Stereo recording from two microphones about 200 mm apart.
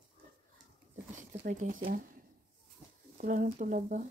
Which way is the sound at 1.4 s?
45° right (ahead or behind).